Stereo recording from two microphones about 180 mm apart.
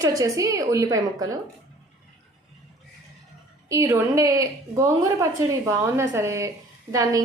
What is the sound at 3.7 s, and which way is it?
A woman's voice, 15° right (ahead or behind).